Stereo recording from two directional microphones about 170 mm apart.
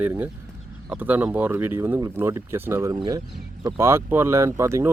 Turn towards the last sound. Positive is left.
turn(degrees=-15)  # may be behind; listen again after turning